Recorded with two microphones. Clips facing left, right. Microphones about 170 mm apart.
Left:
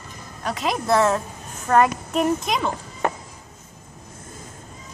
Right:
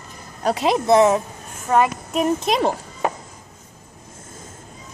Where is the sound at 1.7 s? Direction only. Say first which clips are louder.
Even; 10° right (ahead or behind).